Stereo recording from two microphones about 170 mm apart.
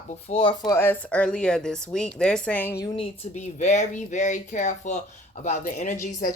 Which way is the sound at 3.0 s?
45° left (ahead or behind).